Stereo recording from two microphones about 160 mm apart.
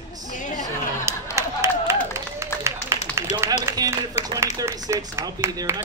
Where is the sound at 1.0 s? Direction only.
15° right (ahead or behind).